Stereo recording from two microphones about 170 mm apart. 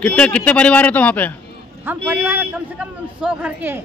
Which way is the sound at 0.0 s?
5° left (ahead or behind).